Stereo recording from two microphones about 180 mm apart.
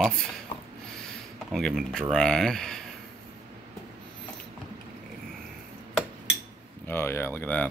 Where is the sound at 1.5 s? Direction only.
Centre (ahead or behind).